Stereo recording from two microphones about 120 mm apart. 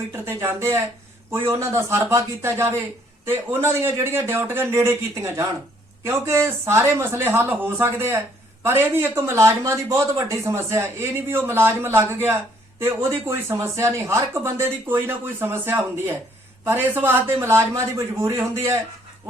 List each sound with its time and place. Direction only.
0.3 s speech: 20° right (ahead or behind)